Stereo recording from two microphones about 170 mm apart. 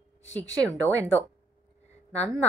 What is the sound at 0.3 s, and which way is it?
Speech, 10° left (ahead or behind).